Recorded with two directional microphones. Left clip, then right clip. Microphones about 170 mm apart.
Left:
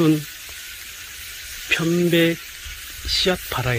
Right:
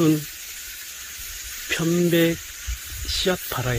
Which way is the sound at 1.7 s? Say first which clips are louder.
Left 2 dB; 5° right (ahead or behind).